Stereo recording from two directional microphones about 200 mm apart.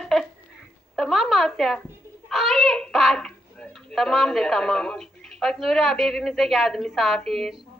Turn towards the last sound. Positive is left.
turn(degrees=0)  # may be behind; listen again after turning